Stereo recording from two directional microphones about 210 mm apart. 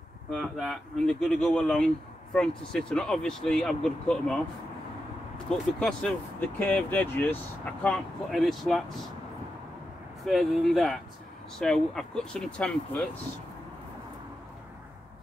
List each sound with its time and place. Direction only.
0.3 s speech: centre (ahead or behind)
5.5 s speech: 5° left (ahead or behind)
10.2 s speech: centre (ahead or behind)